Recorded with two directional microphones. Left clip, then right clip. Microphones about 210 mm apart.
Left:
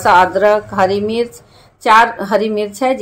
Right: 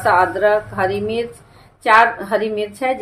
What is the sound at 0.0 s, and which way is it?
A woman's voice, 35° left (ahead or behind).